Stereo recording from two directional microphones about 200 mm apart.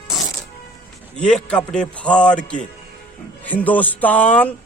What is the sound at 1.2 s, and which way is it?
A man's voice, 5° left (ahead or behind).